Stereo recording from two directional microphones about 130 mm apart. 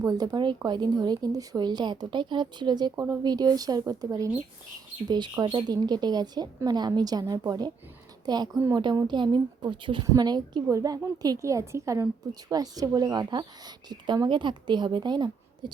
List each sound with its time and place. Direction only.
0.0 s a woman's voice: 30° right (ahead or behind)